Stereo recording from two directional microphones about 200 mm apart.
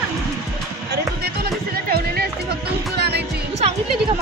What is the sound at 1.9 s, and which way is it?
Music, 50° right (ahead or behind).